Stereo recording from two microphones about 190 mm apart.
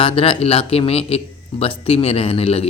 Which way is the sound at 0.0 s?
30° left (ahead or behind).